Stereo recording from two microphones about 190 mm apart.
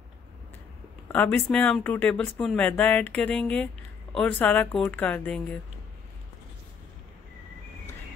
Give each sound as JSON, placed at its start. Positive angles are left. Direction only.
{"t": 1.1, "sound": "speech", "side_deg": 10}